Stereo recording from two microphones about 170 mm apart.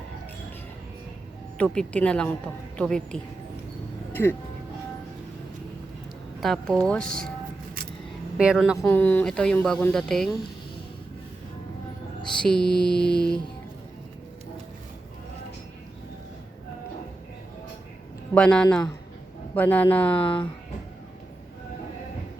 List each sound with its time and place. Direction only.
1.5 s speech: 5° left (ahead or behind)
6.4 s speech: centre (ahead or behind)
8.4 s speech: 5° right (ahead or behind)
8.9 s speech: 10° left (ahead or behind)
12.3 s speech: 5° left (ahead or behind)
18.3 s speech: 5° left (ahead or behind)
20.2 s speech: 30° left (ahead or behind)